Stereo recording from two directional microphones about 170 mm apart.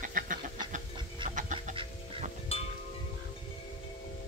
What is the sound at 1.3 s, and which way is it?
Chicken, 45° right (ahead or behind).